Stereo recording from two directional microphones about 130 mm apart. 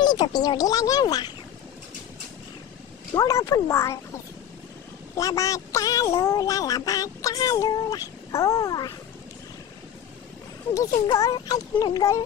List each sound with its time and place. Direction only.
0.0 s quack: 30° left (ahead or behind)
3.2 s quack: 25° left (ahead or behind)
10.7 s quack: 25° left (ahead or behind)